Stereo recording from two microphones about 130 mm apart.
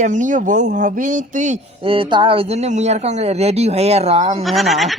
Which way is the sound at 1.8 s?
45° right (ahead or behind).